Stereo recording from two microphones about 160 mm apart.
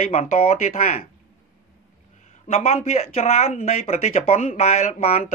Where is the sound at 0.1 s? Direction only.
45° left (ahead or behind).